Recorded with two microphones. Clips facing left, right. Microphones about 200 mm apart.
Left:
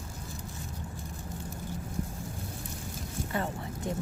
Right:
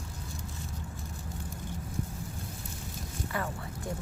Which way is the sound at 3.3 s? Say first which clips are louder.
Left 3 dB; 25° left (ahead or behind).